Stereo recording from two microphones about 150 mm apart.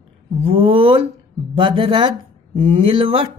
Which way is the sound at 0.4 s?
40° right (ahead or behind).